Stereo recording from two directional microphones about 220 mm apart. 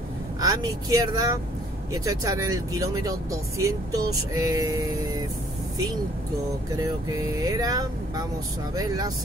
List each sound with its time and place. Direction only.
0.4 s speech: 15° right (ahead or behind)
6.8 s speech: 15° right (ahead or behind)